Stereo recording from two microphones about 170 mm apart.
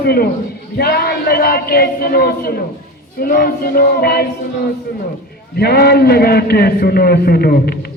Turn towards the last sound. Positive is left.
turn(degrees=65)  # may be behind; listen again after turning